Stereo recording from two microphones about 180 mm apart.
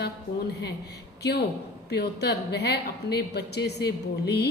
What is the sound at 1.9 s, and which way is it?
A woman's voice, 65° left (ahead or behind).